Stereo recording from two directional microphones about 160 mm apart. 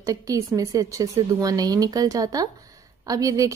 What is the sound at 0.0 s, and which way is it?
A woman's voice, 20° right (ahead or behind).